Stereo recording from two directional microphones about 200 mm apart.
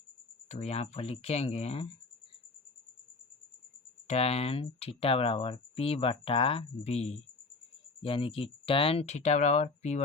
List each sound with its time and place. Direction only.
0.4 s speech: 30° left (ahead or behind)
4.0 s speech: 30° left (ahead or behind)